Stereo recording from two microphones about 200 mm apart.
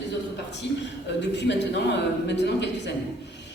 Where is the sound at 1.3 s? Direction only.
60° left (ahead or behind).